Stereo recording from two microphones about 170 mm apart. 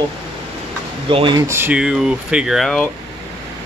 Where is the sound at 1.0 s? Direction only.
30° right (ahead or behind).